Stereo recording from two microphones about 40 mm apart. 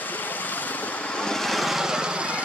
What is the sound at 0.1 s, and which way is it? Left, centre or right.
Vehicle, left.